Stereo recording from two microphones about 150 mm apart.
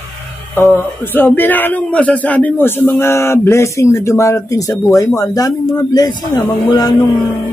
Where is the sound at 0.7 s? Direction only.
15° left (ahead or behind).